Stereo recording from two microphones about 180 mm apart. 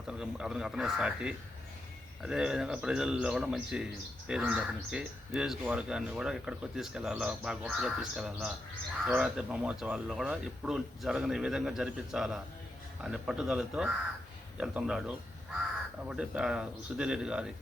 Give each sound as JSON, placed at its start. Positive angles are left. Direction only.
{"t": 0.1, "sound": "speech", "side_deg": -5}